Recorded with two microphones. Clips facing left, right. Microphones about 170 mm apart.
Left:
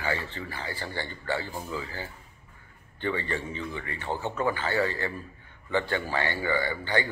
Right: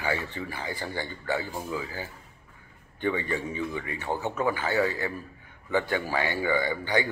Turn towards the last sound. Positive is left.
turn(degrees=-15)  # may be behind; listen again after turning